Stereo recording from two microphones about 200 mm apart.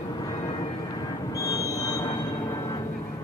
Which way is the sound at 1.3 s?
15° left (ahead or behind).